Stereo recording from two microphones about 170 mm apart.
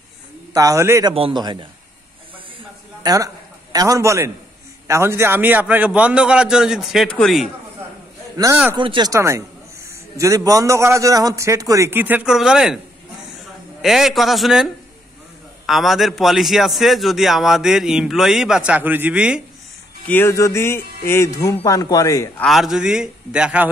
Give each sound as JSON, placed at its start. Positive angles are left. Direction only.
{"t": 0.5, "sound": "a man's voice", "side_deg": -20}
{"t": 1.1, "sound": "a man's voice", "side_deg": -30}
{"t": 3.0, "sound": "a man's voice", "side_deg": -20}
{"t": 8.7, "sound": "a man's voice", "side_deg": -25}
{"t": 20.1, "sound": "a man's voice", "side_deg": 15}
{"t": 22.4, "sound": "a man's voice", "side_deg": 0}